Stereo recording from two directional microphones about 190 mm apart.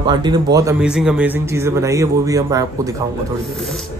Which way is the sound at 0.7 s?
5° right (ahead or behind).